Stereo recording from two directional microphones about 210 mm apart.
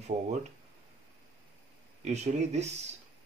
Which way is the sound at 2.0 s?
30° right (ahead or behind).